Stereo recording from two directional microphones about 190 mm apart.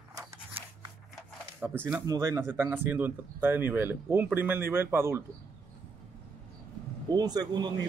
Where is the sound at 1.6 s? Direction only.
10° right (ahead or behind).